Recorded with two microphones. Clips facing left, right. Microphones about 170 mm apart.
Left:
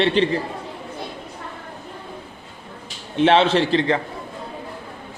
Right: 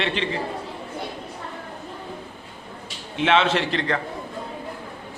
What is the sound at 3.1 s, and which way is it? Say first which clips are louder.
Speech: left 4 dB; 35° left (ahead or behind).